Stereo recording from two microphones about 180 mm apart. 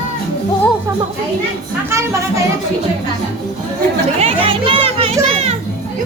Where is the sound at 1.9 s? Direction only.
15° right (ahead or behind).